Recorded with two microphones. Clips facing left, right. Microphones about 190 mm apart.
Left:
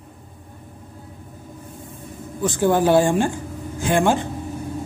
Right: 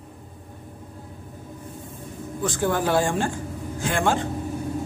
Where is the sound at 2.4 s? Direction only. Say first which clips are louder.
Left 6 dB; 20° left (ahead or behind).